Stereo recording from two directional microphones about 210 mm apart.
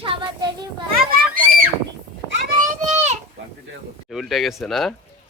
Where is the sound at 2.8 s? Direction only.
35° right (ahead or behind).